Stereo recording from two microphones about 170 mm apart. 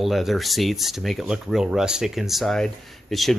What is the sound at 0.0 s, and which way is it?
Speech, centre (ahead or behind).